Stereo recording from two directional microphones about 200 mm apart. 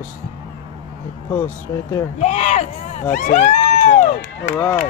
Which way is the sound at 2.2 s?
35° left (ahead or behind).